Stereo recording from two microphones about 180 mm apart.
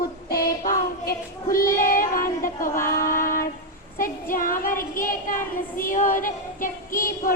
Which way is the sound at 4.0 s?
50° left (ahead or behind).